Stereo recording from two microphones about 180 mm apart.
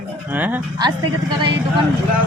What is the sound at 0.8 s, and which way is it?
Speech, 25° right (ahead or behind).